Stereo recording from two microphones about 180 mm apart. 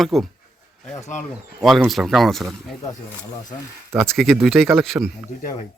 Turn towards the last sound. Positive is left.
turn(degrees=0)  # may be behind; listen again after turning